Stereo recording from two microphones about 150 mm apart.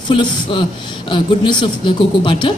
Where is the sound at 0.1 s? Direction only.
35° left (ahead or behind).